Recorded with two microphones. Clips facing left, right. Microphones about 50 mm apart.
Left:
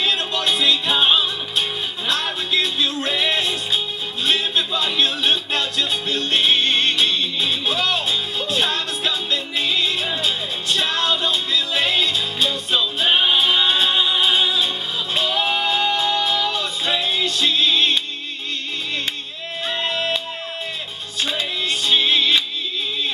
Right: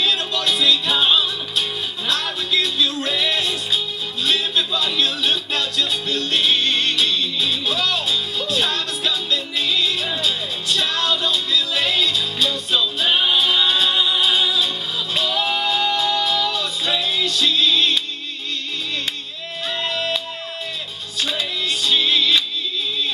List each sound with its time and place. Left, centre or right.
0.0 s music: centre
19.7 s music: centre
21.2 s music: centre